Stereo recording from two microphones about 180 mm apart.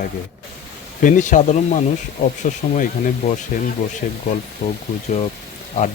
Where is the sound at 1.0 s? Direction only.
45° left (ahead or behind).